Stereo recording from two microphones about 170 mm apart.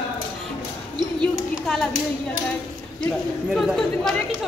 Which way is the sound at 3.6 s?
Centre (ahead or behind).